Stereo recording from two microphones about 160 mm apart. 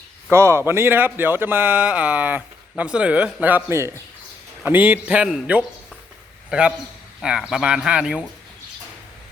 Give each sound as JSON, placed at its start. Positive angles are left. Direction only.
{"t": 0.3, "sound": "speech", "side_deg": -15}